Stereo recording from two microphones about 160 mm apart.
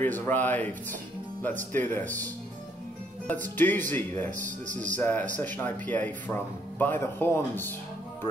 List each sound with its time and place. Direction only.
0.0 s speech: 10° left (ahead or behind)
3.5 s speech: 10° left (ahead or behind)
4.3 s speech: 50° right (ahead or behind)
4.9 s speech: 10° left (ahead or behind)